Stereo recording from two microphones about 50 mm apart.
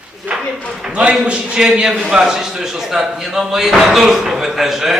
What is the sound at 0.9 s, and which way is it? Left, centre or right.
A man's voice, right.